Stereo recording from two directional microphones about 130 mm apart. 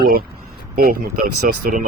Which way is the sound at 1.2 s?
90° right.